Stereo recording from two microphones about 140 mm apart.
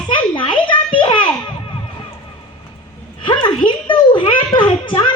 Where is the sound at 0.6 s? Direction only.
35° left (ahead or behind).